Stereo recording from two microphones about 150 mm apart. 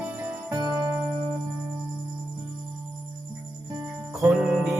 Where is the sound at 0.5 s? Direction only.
25° right (ahead or behind).